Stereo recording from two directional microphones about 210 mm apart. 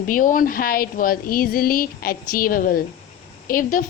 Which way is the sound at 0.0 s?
40° left (ahead or behind).